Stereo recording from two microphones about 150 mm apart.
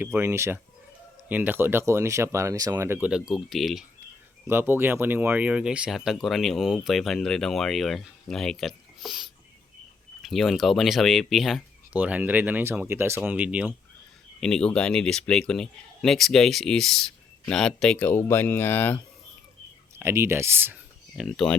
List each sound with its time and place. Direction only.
0.0 s speech: 15° right (ahead or behind)
3.1 s speech: 5° right (ahead or behind)
4.4 s speech: 15° right (ahead or behind)
14.4 s speech: 5° left (ahead or behind)
20.0 s speech: 15° right (ahead or behind)
21.2 s speech: centre (ahead or behind)